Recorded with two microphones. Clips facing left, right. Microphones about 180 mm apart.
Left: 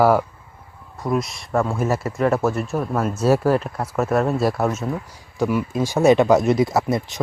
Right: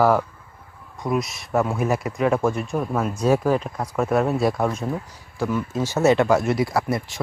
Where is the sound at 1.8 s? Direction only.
15° right (ahead or behind).